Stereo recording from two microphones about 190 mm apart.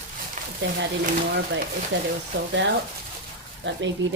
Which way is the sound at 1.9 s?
70° right (ahead or behind).